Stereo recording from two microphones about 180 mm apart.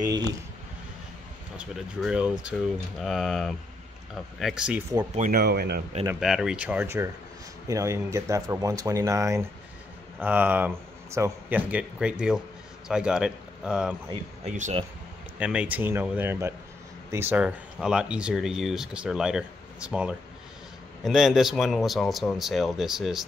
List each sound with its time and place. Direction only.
0.0 s speech: 20° right (ahead or behind)
1.6 s speech: 5° right (ahead or behind)
5.1 s speech: 50° right (ahead or behind)
6.1 s speech: centre (ahead or behind)
14.1 s speech: 35° right (ahead or behind)
15.3 s speech: 5° right (ahead or behind)